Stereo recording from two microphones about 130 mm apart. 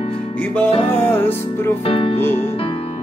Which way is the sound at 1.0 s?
15° left (ahead or behind).